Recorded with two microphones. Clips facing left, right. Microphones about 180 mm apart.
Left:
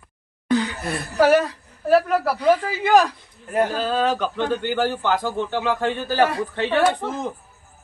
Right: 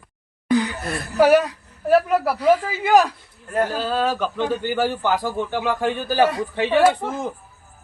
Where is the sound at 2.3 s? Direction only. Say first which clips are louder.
Right 1 dB; 5° right (ahead or behind).